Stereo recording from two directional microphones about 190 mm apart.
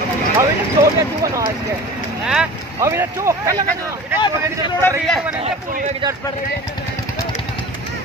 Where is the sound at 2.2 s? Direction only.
5° right (ahead or behind).